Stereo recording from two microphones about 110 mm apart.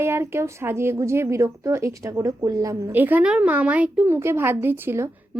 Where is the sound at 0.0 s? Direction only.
25° right (ahead or behind).